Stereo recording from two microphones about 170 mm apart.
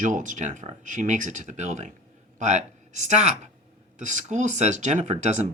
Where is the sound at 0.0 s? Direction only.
50° right (ahead or behind).